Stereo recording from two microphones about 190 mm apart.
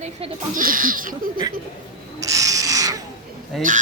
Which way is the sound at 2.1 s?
15° right (ahead or behind).